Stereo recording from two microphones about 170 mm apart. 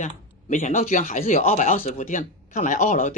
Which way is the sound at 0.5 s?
50° left (ahead or behind).